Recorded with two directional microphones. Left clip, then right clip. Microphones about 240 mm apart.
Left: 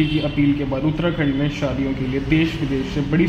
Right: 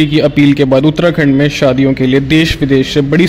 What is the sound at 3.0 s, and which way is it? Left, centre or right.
Speech, right.